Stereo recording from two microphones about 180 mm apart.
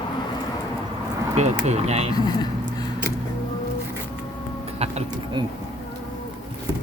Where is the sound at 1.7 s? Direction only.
35° right (ahead or behind).